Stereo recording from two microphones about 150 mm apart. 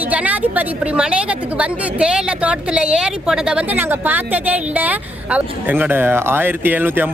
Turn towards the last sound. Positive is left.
turn(degrees=-15)  # may be behind; listen again after turning